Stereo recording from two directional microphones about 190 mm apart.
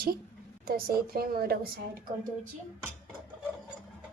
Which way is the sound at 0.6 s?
50° right (ahead or behind).